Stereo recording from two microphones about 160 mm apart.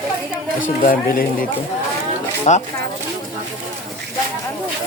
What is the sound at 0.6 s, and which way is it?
Speech, 60° left (ahead or behind).